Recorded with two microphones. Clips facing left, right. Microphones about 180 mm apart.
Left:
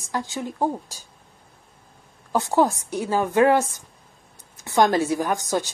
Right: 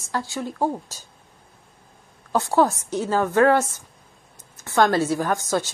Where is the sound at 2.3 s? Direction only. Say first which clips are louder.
Right 1 dB; 15° left (ahead or behind).